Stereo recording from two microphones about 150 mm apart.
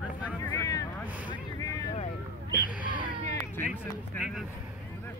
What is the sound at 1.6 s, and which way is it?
Vehicle, 25° left (ahead or behind).